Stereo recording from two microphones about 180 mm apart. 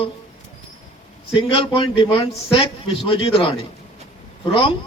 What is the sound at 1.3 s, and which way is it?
A man's voice, 30° left (ahead or behind).